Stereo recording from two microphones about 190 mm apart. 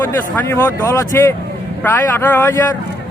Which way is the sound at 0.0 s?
15° left (ahead or behind).